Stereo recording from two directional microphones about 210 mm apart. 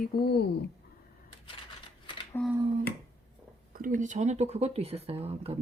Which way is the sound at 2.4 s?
10° left (ahead or behind).